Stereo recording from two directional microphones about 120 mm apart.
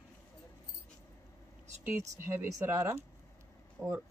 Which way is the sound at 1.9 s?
20° right (ahead or behind).